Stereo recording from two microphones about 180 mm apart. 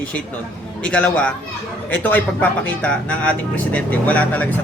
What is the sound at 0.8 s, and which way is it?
Speech, 5° left (ahead or behind).